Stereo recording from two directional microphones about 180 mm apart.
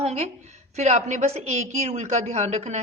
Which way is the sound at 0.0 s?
35° right (ahead or behind).